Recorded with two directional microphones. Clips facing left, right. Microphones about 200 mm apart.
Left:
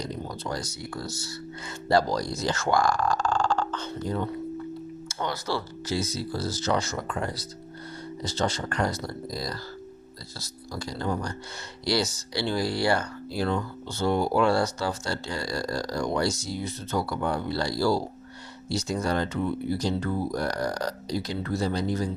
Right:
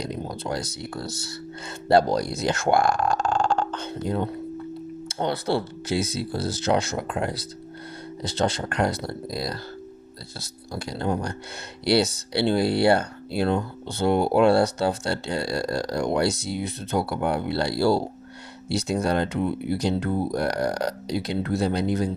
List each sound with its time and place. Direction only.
0.4 s speech: 65° right (ahead or behind)
10.8 s speech: 60° right (ahead or behind)
20.1 s speech: 25° right (ahead or behind)
20.3 s speech: 65° right (ahead or behind)